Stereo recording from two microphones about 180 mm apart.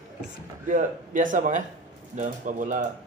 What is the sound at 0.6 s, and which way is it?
Speech, 45° right (ahead or behind).